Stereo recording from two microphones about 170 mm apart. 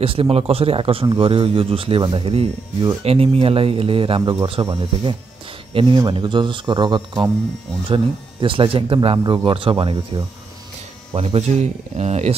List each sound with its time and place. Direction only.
0.0 s speech: 35° right (ahead or behind)